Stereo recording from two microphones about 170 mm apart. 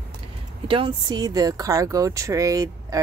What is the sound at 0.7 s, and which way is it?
Speech, 30° right (ahead or behind).